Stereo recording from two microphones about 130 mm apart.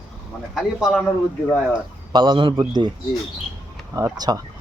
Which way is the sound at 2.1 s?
40° right (ahead or behind).